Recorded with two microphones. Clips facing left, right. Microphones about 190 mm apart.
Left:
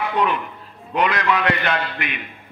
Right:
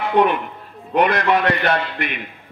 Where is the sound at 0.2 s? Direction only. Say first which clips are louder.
Right 7 dB; 60° right (ahead or behind).